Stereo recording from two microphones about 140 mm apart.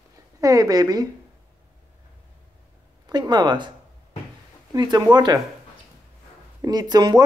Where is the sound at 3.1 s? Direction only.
30° right (ahead or behind).